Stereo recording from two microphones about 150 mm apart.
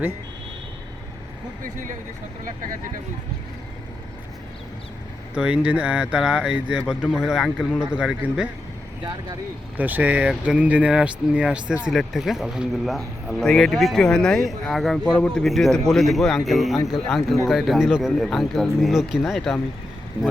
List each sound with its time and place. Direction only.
1.6 s speech: 60° right (ahead or behind)
5.3 s speech: 5° right (ahead or behind)
9.7 s speech: 10° right (ahead or behind)